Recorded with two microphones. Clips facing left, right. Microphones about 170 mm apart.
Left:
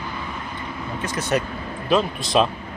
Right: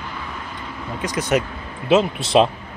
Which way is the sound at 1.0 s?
15° right (ahead or behind).